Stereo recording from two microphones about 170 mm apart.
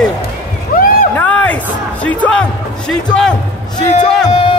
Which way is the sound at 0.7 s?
55° left (ahead or behind).